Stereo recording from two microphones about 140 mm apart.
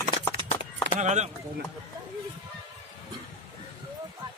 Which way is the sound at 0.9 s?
55° right (ahead or behind).